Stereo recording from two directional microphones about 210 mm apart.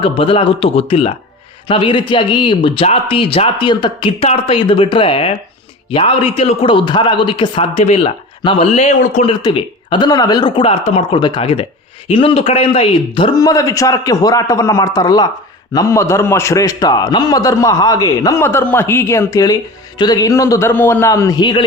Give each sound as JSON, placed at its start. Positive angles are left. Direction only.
{"t": 0.0, "sound": "a man's voice", "side_deg": 25}
{"t": 9.4, "sound": "a man's voice", "side_deg": 25}